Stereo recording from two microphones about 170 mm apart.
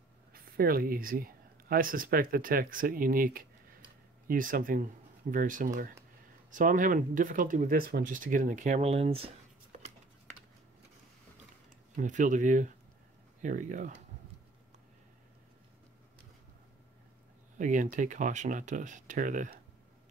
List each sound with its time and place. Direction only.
0.3 s speech: 60° right (ahead or behind); by 9.9 s 35° right (ahead or behind)
12.0 s speech: 50° right (ahead or behind)
17.6 s speech: 45° right (ahead or behind)